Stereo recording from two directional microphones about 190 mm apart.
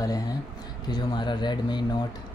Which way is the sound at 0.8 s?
20° left (ahead or behind).